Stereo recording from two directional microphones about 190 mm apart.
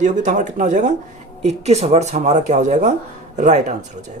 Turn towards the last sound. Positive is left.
turn(degrees=-40)  # may be behind; listen again after turning